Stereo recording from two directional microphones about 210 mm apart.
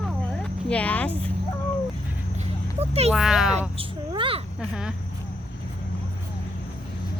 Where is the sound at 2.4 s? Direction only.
30° right (ahead or behind).